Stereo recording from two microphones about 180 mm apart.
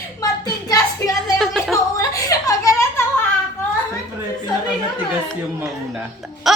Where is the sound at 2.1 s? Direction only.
20° left (ahead or behind).